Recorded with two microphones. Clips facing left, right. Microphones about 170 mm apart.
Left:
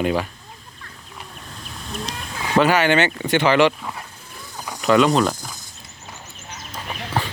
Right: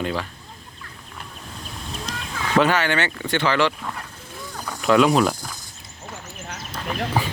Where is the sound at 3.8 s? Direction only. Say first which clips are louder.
Even; 5° left (ahead or behind).